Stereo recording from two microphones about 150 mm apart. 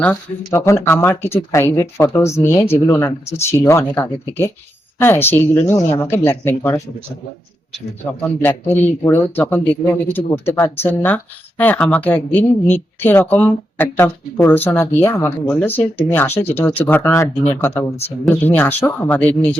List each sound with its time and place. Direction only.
0.0 s speech: 15° left (ahead or behind)
8.2 s speech: 10° left (ahead or behind)